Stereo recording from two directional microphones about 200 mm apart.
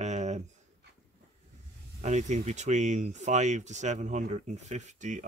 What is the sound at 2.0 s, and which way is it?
Speech, 35° right (ahead or behind).